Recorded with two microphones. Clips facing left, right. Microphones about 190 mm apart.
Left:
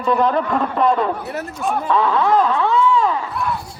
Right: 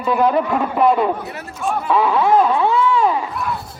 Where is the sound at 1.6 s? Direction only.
10° right (ahead or behind).